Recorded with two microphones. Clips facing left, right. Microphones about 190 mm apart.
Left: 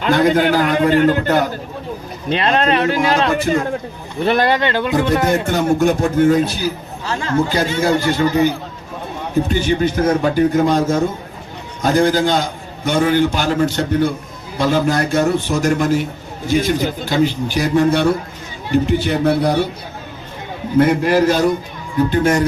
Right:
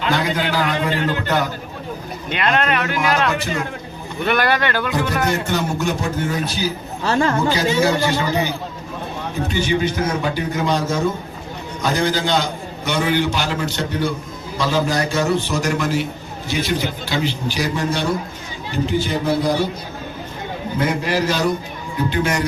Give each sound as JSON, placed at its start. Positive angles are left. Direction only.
{"t": 0.0, "sound": "a man's voice", "side_deg": 50}
{"t": 2.3, "sound": "speech", "side_deg": 30}
{"t": 3.3, "sound": "a man's voice", "side_deg": 50}
{"t": 4.2, "sound": "speech", "side_deg": 30}
{"t": 5.3, "sound": "a man's voice", "side_deg": 50}
{"t": 7.0, "sound": "a man's voice", "side_deg": -65}
{"t": 7.5, "sound": "a man's voice", "side_deg": 50}
{"t": 9.5, "sound": "a man's voice", "side_deg": 50}
{"t": 20.7, "sound": "a man's voice", "side_deg": 55}